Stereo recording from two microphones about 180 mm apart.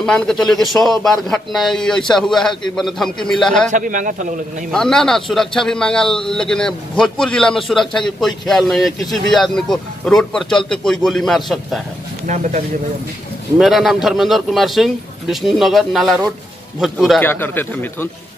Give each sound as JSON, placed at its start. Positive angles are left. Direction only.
{"t": 0.0, "sound": "a man's voice", "side_deg": 5}
{"t": 3.7, "sound": "a man's voice", "side_deg": -45}
{"t": 4.6, "sound": "a man's voice", "side_deg": 5}
{"t": 13.6, "sound": "a man's voice", "side_deg": 0}
{"t": 17.2, "sound": "speech", "side_deg": 10}